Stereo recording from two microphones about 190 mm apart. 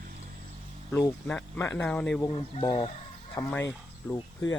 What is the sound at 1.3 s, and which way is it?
Speech, 10° left (ahead or behind).